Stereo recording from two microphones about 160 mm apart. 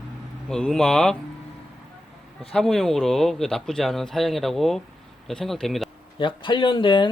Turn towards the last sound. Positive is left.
turn(degrees=30)  # may be behind; listen again after turning